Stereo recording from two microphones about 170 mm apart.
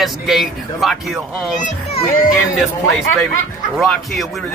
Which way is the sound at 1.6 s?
35° left (ahead or behind).